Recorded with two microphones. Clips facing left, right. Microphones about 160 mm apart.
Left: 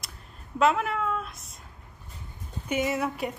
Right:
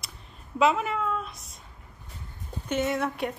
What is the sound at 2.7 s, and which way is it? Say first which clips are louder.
Speech: even; 10° left (ahead or behind).